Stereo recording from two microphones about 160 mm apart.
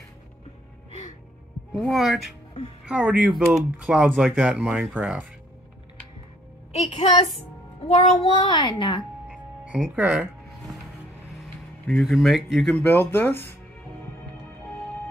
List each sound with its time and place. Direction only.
1.7 s speech: centre (ahead or behind)
6.7 s a woman's voice: 40° left (ahead or behind)
9.3 s music: 5° right (ahead or behind)
11.9 s speech: centre (ahead or behind)